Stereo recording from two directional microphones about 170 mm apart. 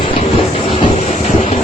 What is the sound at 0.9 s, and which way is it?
Vehicle, 40° left (ahead or behind).